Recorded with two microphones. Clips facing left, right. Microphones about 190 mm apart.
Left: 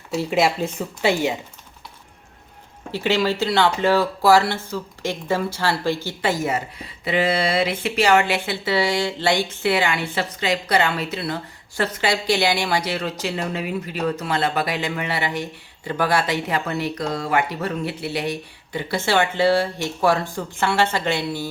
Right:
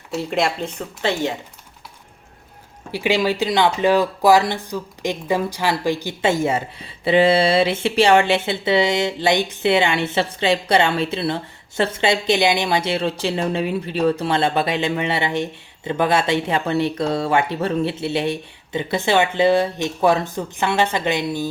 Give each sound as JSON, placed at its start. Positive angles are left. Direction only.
{"t": 0.1, "sound": "speech", "side_deg": 0}
{"t": 2.9, "sound": "speech", "side_deg": -15}